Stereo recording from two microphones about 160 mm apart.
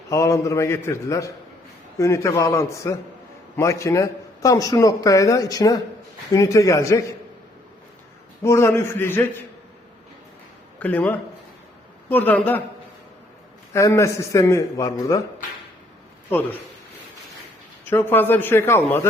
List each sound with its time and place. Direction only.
0.1 s speech: 20° left (ahead or behind)
8.4 s a man's voice: 15° left (ahead or behind)
10.8 s a man's voice: 10° left (ahead or behind)
13.7 s speech: 20° left (ahead or behind)
17.8 s a man's voice: 15° left (ahead or behind)